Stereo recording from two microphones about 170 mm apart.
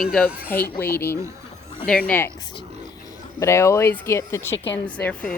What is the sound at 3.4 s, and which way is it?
Speech, 15° left (ahead or behind).